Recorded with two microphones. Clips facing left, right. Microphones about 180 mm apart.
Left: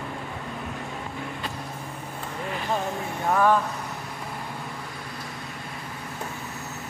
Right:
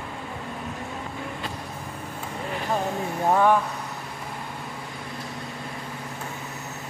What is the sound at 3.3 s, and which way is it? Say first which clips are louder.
Speech: right 1 dB; 15° right (ahead or behind).